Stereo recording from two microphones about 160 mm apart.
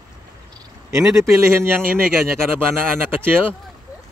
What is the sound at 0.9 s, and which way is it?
Speech, 15° right (ahead or behind).